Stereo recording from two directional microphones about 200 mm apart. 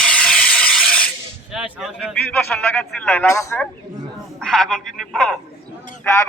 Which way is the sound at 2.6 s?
10° left (ahead or behind).